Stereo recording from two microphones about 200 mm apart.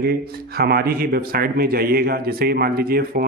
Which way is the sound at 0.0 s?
50° right (ahead or behind).